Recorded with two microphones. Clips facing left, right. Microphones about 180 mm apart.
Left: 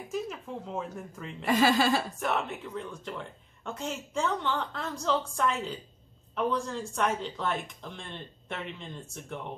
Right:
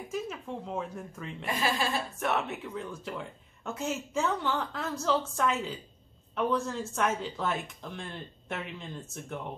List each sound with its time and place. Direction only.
0.1 s a woman's voice: centre (ahead or behind)
1.5 s speech: 75° left (ahead or behind)
2.1 s a woman's voice: centre (ahead or behind)